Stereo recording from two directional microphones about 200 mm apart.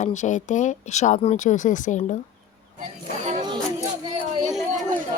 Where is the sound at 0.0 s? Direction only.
35° left (ahead or behind).